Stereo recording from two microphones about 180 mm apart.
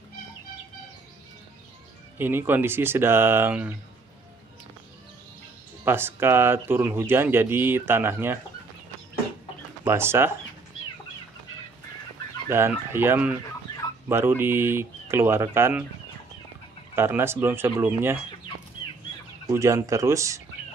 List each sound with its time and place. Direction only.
2.1 s speech: 10° right (ahead or behind)
5.9 s speech: 10° right (ahead or behind)
9.8 s speech: 15° right (ahead or behind)
12.4 s speech: 15° right (ahead or behind)
16.9 s speech: 15° right (ahead or behind)
19.5 s speech: 15° right (ahead or behind)